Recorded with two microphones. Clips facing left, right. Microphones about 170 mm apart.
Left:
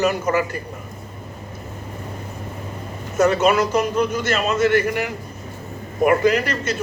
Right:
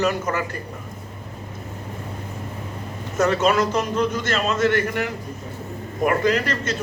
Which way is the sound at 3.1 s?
20° left (ahead or behind).